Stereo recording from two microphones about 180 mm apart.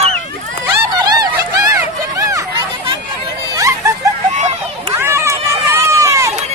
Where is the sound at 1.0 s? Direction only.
20° right (ahead or behind).